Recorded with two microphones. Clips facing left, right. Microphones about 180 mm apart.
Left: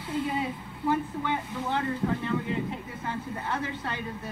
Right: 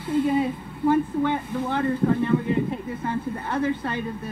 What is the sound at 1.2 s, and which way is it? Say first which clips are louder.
Speech: right 5 dB; 55° right (ahead or behind).